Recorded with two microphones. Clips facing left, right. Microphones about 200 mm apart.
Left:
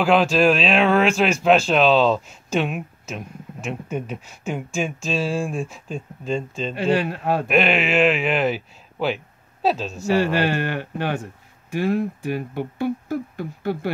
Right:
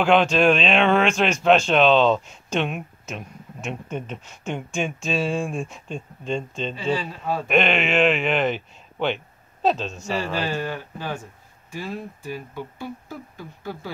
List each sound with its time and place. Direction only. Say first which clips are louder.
0.0 s speech: left 1 dB; 5° left (ahead or behind)
6.7 s speech: left 6 dB; 70° left (ahead or behind)
7.4 s speech: even; 5° left (ahead or behind)
10.1 s speech: left 6 dB; 70° left (ahead or behind)